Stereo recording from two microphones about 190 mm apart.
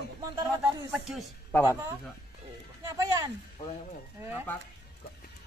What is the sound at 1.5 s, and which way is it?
Speech, 10° left (ahead or behind).